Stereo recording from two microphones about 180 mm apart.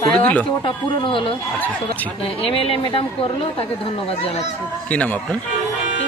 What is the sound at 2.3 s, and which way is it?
A woman's voice, 30° left (ahead or behind).